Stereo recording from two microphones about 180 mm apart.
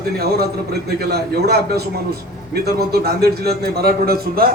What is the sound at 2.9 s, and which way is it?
A man's voice, 60° right (ahead or behind).